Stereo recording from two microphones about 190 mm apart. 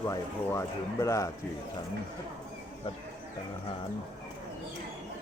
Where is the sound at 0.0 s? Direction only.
15° left (ahead or behind).